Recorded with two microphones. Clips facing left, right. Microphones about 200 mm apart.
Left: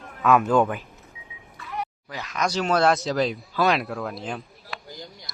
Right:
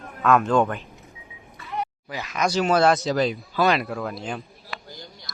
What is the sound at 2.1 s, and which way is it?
Speech, 5° right (ahead or behind).